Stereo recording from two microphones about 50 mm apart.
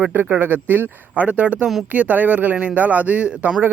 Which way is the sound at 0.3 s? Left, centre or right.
Right.